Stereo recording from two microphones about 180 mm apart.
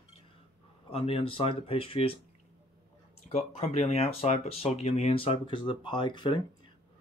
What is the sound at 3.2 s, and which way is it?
Speech, 35° left (ahead or behind).